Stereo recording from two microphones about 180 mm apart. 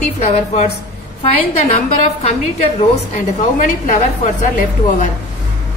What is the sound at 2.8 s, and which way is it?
A woman's voice, 40° left (ahead or behind).